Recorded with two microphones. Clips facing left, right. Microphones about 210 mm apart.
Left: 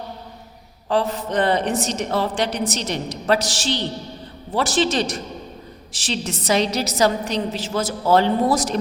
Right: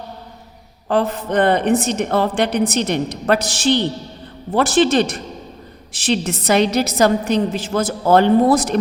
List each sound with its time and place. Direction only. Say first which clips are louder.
0.9 s a woman's voice: right 3 dB; 55° right (ahead or behind)